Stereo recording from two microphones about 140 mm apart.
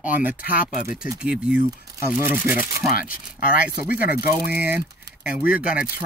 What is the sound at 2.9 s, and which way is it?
Speech, 90° left.